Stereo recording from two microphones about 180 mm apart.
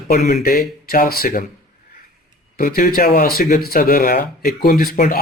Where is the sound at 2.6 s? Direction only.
55° left (ahead or behind).